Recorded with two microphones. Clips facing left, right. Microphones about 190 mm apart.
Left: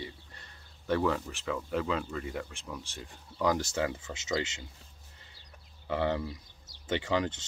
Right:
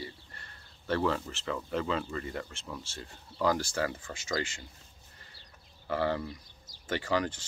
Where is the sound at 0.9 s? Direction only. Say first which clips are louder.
Left 1 dB; 5° left (ahead or behind).